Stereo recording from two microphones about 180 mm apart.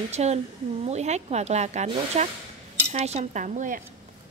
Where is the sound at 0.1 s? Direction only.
35° right (ahead or behind).